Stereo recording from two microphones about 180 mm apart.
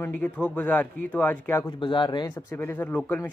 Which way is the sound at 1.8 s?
25° left (ahead or behind).